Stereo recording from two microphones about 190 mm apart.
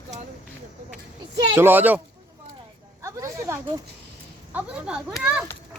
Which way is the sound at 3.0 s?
15° right (ahead or behind).